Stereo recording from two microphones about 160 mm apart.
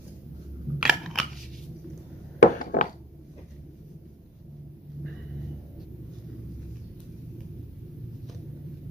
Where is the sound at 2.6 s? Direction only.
55° left (ahead or behind).